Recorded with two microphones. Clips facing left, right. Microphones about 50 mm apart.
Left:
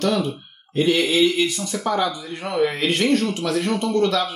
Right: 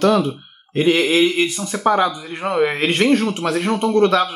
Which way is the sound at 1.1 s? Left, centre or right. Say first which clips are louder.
Right 2 dB; right.